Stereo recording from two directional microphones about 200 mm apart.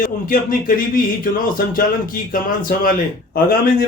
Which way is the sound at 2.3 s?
45° left (ahead or behind).